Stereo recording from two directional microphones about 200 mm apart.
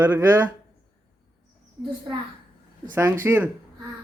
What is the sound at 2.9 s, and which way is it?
Speech, 10° right (ahead or behind).